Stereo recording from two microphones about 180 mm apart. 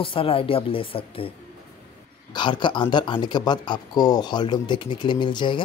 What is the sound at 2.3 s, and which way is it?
Speech, 25° left (ahead or behind).